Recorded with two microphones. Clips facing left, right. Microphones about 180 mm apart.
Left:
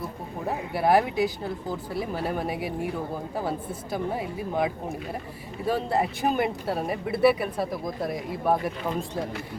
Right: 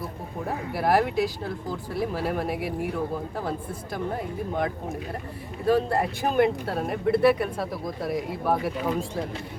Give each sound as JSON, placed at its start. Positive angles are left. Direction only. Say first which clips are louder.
{"t": 0.7, "sound": "speech", "louder": "left 1 dB", "side_deg": 0}